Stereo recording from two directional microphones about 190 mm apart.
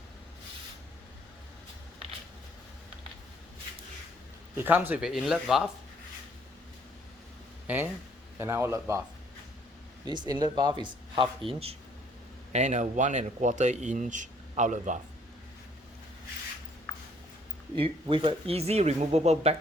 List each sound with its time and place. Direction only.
4.5 s speech: 10° right (ahead or behind)
7.7 s a man's voice: 10° right (ahead or behind)
10.1 s speech: 25° right (ahead or behind); by 14.9 s 40° right (ahead or behind)
17.7 s speech: 25° right (ahead or behind)